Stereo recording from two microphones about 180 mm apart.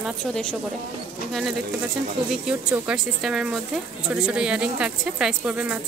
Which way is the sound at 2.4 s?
5° right (ahead or behind).